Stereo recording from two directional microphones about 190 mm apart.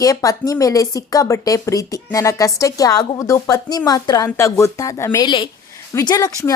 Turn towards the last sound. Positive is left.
turn(degrees=20)  # may be behind; listen again after turning